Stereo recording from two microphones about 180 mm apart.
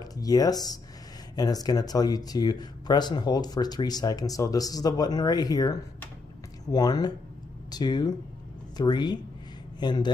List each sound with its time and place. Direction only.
0.0 s speech: 20° left (ahead or behind)